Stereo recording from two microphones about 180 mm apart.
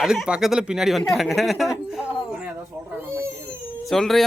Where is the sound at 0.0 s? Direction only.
5° right (ahead or behind).